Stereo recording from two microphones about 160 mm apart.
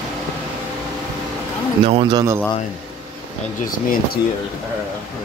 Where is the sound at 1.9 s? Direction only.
35° right (ahead or behind).